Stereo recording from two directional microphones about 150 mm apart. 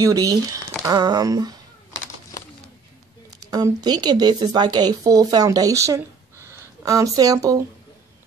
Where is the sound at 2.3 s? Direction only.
25° left (ahead or behind).